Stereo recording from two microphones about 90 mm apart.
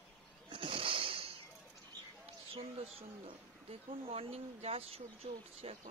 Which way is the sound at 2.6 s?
90° right.